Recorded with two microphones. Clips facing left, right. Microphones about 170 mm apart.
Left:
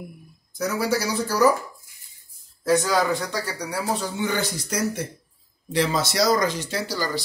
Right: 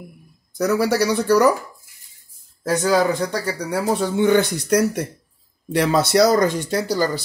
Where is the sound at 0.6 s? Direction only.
65° right (ahead or behind).